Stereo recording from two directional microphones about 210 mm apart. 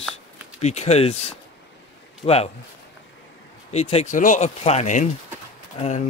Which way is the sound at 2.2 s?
30° left (ahead or behind).